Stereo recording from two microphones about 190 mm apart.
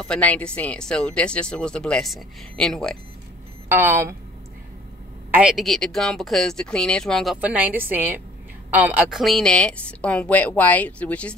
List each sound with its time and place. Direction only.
0.0 s speech: 5° left (ahead or behind)
3.6 s speech: 15° right (ahead or behind)
5.3 s speech: 5° right (ahead or behind)
7.3 s a woman's voice: 10° right (ahead or behind)